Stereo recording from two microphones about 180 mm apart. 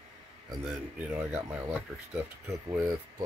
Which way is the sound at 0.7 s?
5° right (ahead or behind).